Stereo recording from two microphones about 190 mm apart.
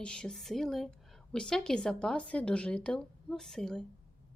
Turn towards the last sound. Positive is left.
turn(degrees=0)  # may be behind; listen again after turning